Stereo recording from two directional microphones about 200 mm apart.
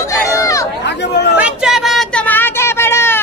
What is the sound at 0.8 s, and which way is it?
Chatter, 60° left (ahead or behind).